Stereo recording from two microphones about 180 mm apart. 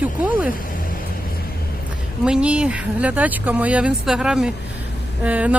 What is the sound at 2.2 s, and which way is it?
Speech, 5° right (ahead or behind).